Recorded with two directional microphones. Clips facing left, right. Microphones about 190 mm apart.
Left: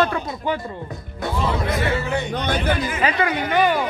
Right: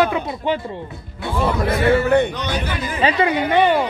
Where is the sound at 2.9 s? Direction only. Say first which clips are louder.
Right 3 dB; 30° right (ahead or behind).